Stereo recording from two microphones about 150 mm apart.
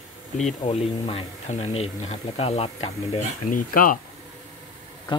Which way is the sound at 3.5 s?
65° left (ahead or behind).